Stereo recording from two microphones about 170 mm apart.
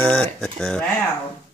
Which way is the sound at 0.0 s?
5° left (ahead or behind).